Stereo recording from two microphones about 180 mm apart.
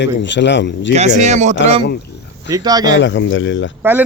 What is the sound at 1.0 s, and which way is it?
Speech, 40° right (ahead or behind).